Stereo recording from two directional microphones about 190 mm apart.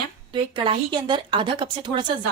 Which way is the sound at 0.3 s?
25° right (ahead or behind).